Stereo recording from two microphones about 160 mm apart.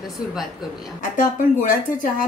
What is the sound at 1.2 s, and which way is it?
Speech, 55° left (ahead or behind).